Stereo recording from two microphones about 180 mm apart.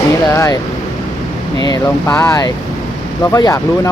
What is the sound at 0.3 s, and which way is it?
Speech, 15° left (ahead or behind).